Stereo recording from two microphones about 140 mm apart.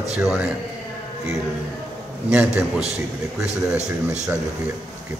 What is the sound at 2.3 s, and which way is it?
Speech, 10° right (ahead or behind).